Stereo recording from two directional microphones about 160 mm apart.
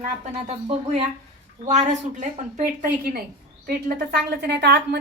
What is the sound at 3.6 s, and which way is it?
A woman's voice, 75° right (ahead or behind).